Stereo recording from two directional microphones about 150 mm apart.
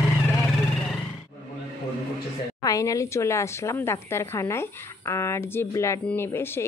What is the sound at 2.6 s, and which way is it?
Speech, 20° left (ahead or behind).